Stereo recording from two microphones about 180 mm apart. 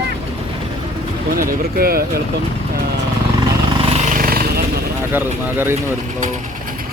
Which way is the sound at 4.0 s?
50° right (ahead or behind).